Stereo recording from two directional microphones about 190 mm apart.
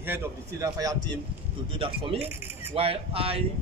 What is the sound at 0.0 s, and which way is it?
A man's voice, 10° right (ahead or behind).